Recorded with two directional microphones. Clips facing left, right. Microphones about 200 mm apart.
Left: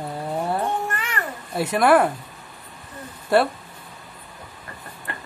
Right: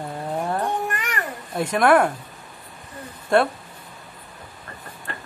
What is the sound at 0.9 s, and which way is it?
Babbling, 15° right (ahead or behind).